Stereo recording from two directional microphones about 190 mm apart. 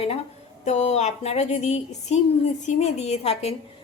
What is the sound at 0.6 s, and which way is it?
A woman's voice, 35° left (ahead or behind).